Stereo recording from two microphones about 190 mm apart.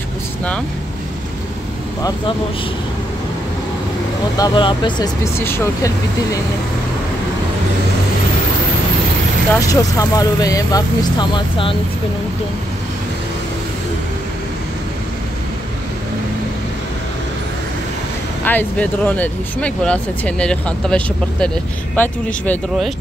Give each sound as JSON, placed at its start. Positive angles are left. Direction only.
{"t": 4.4, "sound": "speech", "side_deg": 25}
{"t": 9.5, "sound": "speech", "side_deg": 20}
{"t": 18.4, "sound": "speech", "side_deg": 10}